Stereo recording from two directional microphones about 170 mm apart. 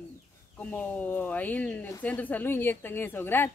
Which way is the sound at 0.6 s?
10° left (ahead or behind).